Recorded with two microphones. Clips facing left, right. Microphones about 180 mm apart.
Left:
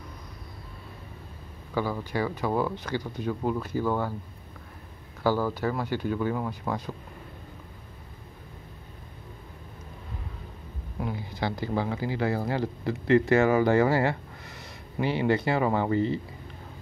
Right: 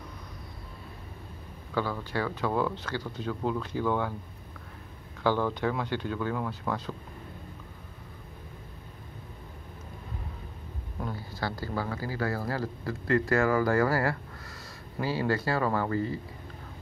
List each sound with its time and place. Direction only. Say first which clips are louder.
1.7 s speech: left 2 dB; 15° left (ahead or behind)
5.2 s speech: left 1 dB; 5° left (ahead or behind)
11.0 s speech: left 3 dB; 15° left (ahead or behind)